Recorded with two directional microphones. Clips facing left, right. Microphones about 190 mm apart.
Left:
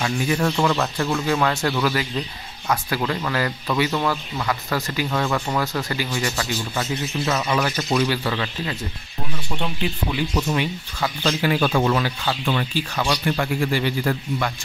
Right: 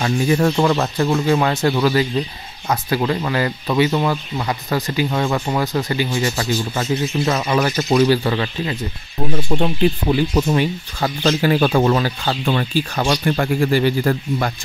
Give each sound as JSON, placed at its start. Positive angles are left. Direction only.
{"t": 0.0, "sound": "speech", "side_deg": -35}
{"t": 6.8, "sound": "speech", "side_deg": -40}
{"t": 9.3, "sound": "speech", "side_deg": -45}